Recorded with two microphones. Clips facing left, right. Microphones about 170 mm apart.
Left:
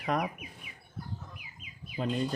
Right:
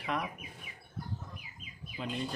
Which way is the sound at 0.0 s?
40° left (ahead or behind).